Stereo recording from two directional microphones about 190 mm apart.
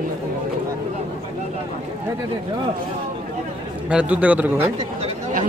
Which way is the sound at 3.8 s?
5° right (ahead or behind).